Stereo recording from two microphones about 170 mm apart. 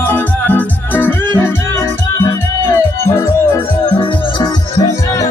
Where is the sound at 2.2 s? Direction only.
15° left (ahead or behind).